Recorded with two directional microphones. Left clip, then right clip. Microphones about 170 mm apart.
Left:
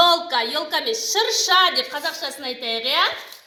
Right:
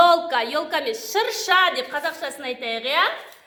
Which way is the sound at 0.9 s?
30° right (ahead or behind).